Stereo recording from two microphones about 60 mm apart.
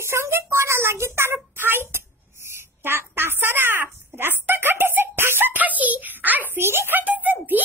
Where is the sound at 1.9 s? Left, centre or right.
Right.